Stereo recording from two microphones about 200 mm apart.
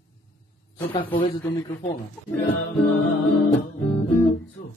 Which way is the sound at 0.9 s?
25° left (ahead or behind).